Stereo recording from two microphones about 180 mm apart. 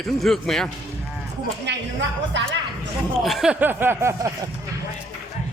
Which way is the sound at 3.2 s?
Centre (ahead or behind).